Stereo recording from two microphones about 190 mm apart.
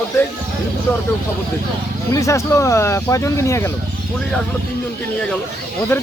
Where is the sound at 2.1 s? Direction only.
15° left (ahead or behind).